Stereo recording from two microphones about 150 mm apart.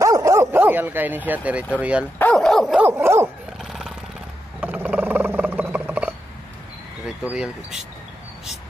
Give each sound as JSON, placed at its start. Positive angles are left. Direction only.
{"t": 0.0, "sound": "dog", "side_deg": -20}
{"t": 2.1, "sound": "dog", "side_deg": 10}
{"t": 2.9, "sound": "dog", "side_deg": -15}
{"t": 3.6, "sound": "a sound", "side_deg": 0}
{"t": 4.6, "sound": "purr", "side_deg": -10}
{"t": 7.2, "sound": "speech", "side_deg": -5}